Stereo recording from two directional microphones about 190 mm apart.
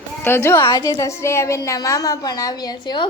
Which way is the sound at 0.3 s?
15° left (ahead or behind).